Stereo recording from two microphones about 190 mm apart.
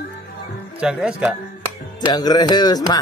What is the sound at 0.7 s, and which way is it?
Speech, 5° right (ahead or behind).